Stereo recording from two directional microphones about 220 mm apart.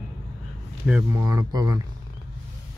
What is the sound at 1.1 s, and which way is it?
Speech, 15° right (ahead or behind).